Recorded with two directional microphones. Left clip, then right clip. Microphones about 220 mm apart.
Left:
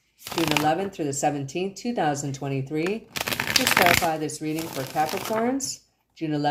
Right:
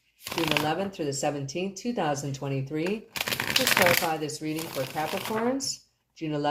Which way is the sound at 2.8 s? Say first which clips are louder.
Left 2 dB; 35° left (ahead or behind).